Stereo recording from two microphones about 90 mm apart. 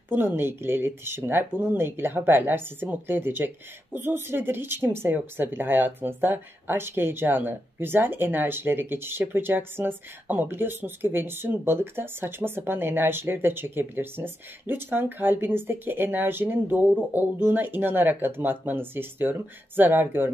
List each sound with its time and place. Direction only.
0.1 s speech: 25° right (ahead or behind)